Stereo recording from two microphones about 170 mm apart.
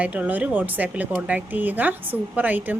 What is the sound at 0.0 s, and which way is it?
Speech, 10° right (ahead or behind).